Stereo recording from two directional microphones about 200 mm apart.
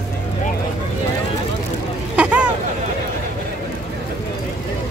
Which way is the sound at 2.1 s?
5° right (ahead or behind).